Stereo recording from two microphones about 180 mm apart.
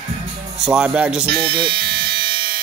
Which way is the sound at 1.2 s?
70° right (ahead or behind).